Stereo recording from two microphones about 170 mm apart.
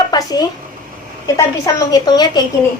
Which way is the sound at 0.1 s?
25° left (ahead or behind).